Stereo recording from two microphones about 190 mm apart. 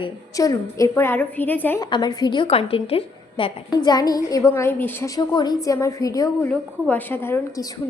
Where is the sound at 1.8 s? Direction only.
20° left (ahead or behind).